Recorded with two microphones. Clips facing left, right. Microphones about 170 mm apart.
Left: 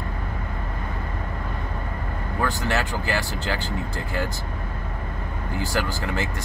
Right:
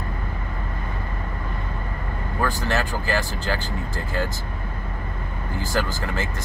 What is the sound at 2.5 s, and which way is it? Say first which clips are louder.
Speech: even; 20° left (ahead or behind).